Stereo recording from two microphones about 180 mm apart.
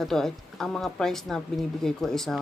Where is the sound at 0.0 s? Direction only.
5° left (ahead or behind).